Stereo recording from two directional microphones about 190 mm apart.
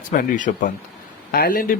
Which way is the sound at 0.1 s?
45° left (ahead or behind).